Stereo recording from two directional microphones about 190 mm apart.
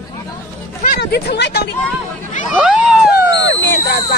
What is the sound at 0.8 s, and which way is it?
Speech, 55° left (ahead or behind).